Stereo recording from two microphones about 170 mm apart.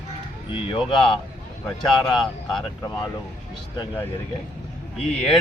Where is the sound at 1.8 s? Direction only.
Centre (ahead or behind).